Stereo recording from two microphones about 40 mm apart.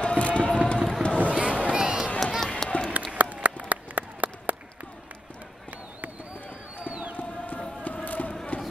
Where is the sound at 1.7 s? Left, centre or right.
Centre.